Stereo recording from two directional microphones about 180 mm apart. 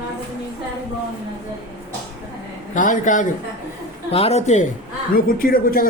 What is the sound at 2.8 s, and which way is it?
Speech, 45° left (ahead or behind).